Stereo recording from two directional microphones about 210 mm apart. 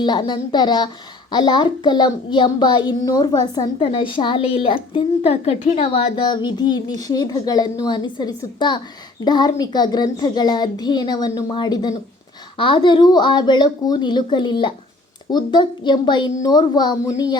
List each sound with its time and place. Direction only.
0.0 s a child's voice: 20° left (ahead or behind)